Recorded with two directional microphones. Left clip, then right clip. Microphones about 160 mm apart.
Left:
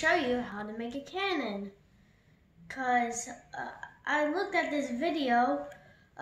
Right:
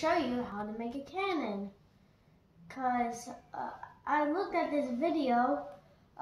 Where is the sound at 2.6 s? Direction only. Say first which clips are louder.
Left 3 dB; 25° left (ahead or behind).